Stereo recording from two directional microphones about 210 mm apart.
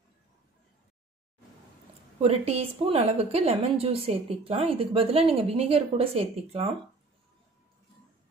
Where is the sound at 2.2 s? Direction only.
30° right (ahead or behind).